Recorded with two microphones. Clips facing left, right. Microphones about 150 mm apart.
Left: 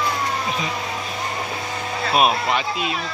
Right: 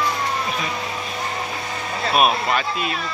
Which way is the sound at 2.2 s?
20° left (ahead or behind).